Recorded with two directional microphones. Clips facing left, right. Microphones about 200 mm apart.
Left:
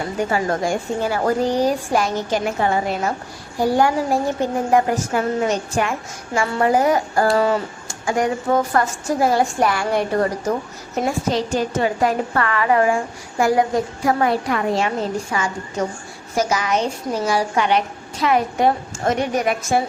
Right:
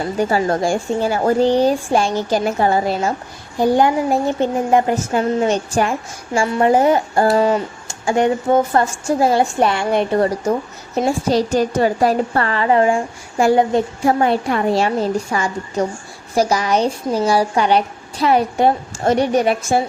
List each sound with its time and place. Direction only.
0.3 s speech: 30° right (ahead or behind)
3.6 s speech: 20° right (ahead or behind)
10.9 s speech: 35° right (ahead or behind)